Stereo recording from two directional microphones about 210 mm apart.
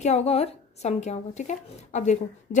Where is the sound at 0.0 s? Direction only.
30° left (ahead or behind).